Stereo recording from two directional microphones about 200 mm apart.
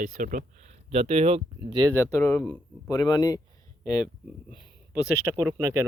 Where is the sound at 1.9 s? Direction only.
10° left (ahead or behind).